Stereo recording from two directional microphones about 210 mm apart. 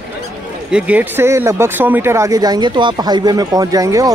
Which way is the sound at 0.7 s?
5° right (ahead or behind).